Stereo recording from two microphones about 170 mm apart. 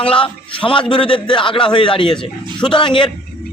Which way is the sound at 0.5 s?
30° left (ahead or behind).